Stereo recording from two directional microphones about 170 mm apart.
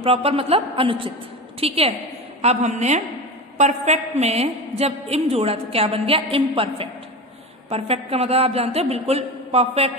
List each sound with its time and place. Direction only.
0.0 s a woman's voice: 35° right (ahead or behind)